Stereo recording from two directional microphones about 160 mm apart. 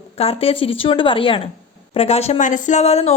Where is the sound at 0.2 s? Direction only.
40° left (ahead or behind).